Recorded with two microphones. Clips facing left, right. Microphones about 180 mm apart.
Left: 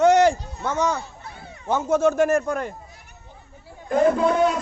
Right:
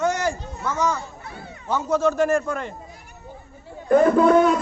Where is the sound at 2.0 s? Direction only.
50° left (ahead or behind).